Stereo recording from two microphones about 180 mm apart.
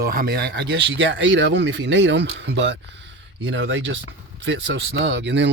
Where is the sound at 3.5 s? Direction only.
90° right; by 5.5 s 75° right (ahead or behind).